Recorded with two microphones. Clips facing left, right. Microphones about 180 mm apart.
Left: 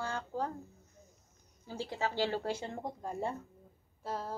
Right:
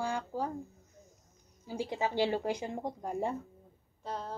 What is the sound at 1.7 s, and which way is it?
Speech, 15° right (ahead or behind).